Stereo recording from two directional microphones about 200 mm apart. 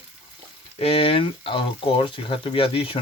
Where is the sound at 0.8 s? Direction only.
30° left (ahead or behind).